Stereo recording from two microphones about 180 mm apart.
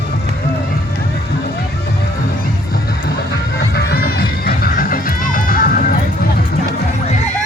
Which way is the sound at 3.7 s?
60° left (ahead or behind).